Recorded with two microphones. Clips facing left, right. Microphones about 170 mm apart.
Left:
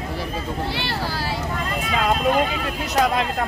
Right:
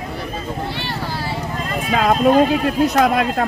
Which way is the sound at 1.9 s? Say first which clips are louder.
Right 6 dB; 55° right (ahead or behind).